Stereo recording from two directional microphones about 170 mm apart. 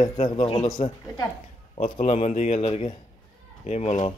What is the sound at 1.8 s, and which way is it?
Speech, 40° left (ahead or behind).